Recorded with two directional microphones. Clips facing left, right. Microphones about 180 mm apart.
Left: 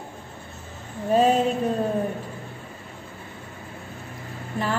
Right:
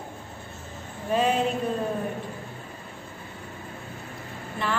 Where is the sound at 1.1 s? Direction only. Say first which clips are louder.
Left 5 dB; 40° left (ahead or behind).